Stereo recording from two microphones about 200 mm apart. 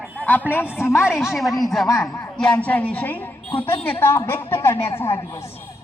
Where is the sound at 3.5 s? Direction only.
25° left (ahead or behind).